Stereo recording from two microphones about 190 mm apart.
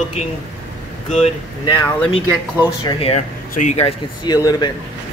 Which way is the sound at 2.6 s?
20° left (ahead or behind).